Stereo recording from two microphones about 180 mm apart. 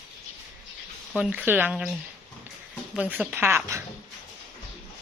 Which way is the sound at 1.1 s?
5° right (ahead or behind).